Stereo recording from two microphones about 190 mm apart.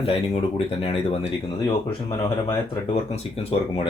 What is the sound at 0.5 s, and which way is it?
Speech, 30° left (ahead or behind).